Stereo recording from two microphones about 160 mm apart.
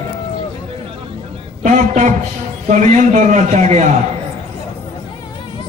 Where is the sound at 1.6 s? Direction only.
50° right (ahead or behind).